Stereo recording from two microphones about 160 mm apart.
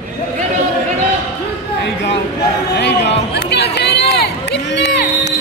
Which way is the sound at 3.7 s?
90° left.